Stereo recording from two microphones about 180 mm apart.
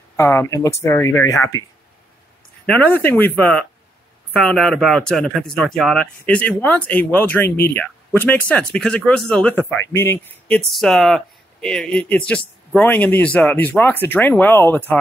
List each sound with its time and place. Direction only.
0.1 s speech: 15° left (ahead or behind)
2.6 s speech: 10° left (ahead or behind)